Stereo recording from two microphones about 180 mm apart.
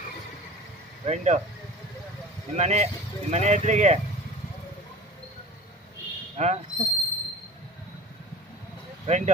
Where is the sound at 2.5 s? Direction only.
40° right (ahead or behind).